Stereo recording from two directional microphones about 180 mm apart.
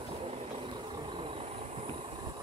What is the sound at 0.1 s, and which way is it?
Vehicle, 30° right (ahead or behind).